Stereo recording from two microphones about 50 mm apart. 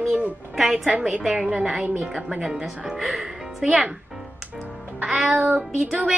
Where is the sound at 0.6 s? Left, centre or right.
Centre.